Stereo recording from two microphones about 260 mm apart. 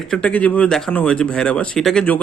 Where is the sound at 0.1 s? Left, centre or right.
Centre.